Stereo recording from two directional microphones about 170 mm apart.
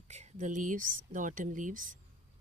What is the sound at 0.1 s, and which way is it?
Speech, 45° right (ahead or behind).